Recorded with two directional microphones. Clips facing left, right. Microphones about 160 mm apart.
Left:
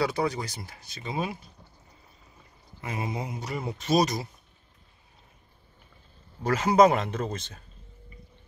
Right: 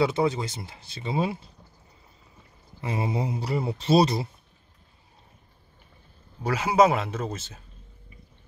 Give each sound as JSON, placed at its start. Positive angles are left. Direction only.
{"t": 0.0, "sound": "speech", "side_deg": -25}
{"t": 2.8, "sound": "speech", "side_deg": -30}
{"t": 6.4, "sound": "speech", "side_deg": -10}